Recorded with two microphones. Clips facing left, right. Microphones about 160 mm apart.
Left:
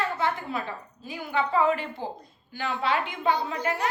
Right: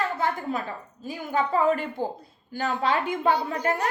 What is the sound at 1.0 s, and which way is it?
A woman's voice, 45° right (ahead or behind).